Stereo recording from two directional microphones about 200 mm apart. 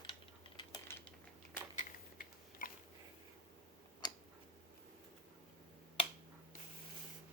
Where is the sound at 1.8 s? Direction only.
45° left (ahead or behind).